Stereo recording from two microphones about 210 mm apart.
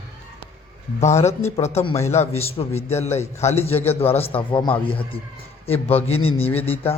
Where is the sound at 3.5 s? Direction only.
30° left (ahead or behind).